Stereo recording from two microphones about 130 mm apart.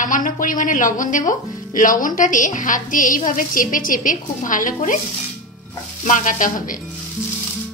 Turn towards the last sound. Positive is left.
turn(degrees=90)